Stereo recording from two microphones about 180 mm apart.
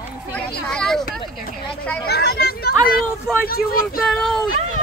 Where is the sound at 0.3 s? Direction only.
5° left (ahead or behind).